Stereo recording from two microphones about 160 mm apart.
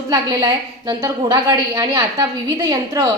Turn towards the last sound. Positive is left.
turn(degrees=-25)  # may be behind; listen again after turning